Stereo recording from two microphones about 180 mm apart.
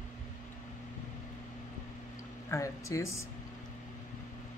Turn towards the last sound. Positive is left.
turn(degrees=15)  # may be behind; listen again after turning